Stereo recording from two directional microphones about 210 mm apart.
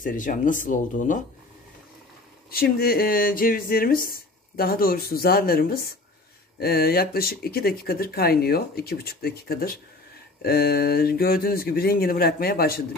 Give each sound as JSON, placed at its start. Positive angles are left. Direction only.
{"t": 0.0, "sound": "speech", "side_deg": 40}
{"t": 2.5, "sound": "speech", "side_deg": 45}